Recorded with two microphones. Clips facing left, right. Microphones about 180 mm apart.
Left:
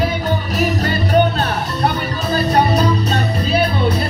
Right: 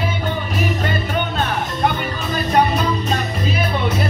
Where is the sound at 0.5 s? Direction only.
40° left (ahead or behind).